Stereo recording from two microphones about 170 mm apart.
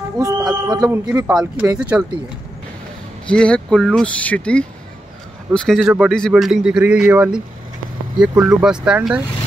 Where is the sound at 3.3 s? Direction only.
5° left (ahead or behind).